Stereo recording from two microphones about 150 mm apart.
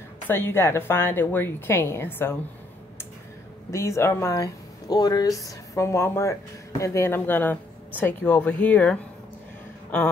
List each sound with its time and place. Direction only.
0.3 s speech: 15° left (ahead or behind)
3.7 s speech: 20° left (ahead or behind)